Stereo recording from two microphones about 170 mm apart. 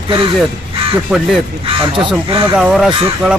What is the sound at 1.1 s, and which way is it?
Speech, centre (ahead or behind).